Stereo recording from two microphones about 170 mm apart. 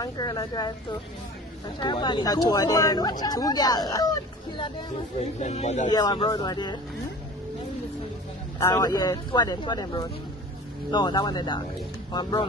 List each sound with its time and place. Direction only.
0.0 s speech: 25° left (ahead or behind)
1.8 s speech: 25° left (ahead or behind)
5.2 s speech: 40° left (ahead or behind)
5.9 s speech: 25° left (ahead or behind)
8.5 s speech: 20° left (ahead or behind)